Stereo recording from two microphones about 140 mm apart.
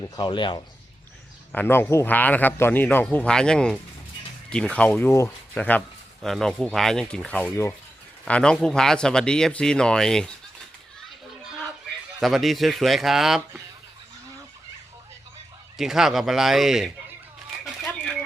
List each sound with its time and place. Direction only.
0.2 s speech: 35° left (ahead or behind)
1.5 s a man's voice: 15° left (ahead or behind)
12.2 s speech: centre (ahead or behind)
15.8 s speech: 5° right (ahead or behind)